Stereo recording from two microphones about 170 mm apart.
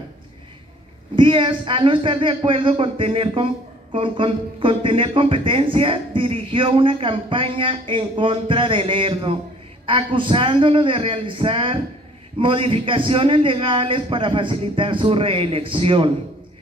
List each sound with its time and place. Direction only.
1.1 s speech: 30° right (ahead or behind)